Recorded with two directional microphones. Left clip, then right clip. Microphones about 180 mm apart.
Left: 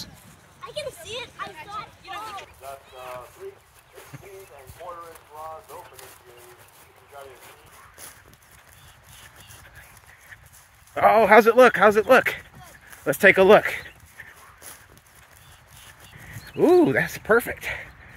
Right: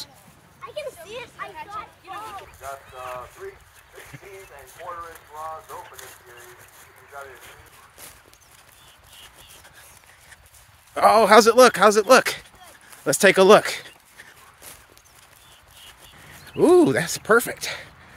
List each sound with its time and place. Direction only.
0.6 s a sound: centre (ahead or behind)
1.1 s speech: centre (ahead or behind)
4.8 s speech: 10° right (ahead or behind)
11.0 s speech: 20° right (ahead or behind)
16.6 s speech: 20° right (ahead or behind)